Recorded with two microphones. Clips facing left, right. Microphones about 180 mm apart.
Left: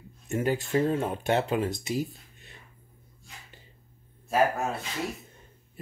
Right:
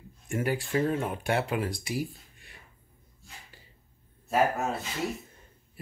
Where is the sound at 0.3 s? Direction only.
20° left (ahead or behind).